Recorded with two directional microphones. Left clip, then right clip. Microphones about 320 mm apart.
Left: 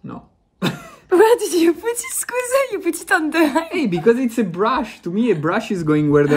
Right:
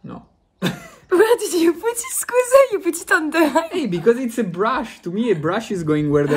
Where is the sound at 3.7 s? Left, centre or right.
Centre.